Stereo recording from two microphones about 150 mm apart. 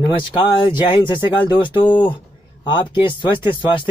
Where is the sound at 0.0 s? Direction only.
35° left (ahead or behind).